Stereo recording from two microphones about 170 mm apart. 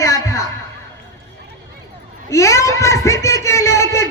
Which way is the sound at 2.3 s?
20° left (ahead or behind).